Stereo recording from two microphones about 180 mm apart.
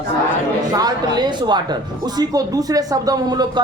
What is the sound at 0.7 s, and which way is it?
Speech, 20° right (ahead or behind).